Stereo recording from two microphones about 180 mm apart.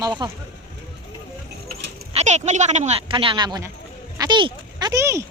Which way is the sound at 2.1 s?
40° right (ahead or behind).